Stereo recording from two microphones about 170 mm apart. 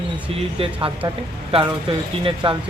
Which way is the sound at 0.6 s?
30° right (ahead or behind).